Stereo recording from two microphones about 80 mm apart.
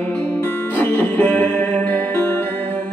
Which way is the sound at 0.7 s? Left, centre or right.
Left.